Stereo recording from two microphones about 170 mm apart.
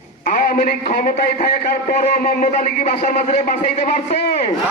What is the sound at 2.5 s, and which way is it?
A man's voice, 45° left (ahead or behind).